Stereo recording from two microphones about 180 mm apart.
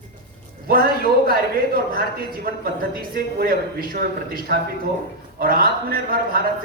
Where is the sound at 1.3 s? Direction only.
55° right (ahead or behind).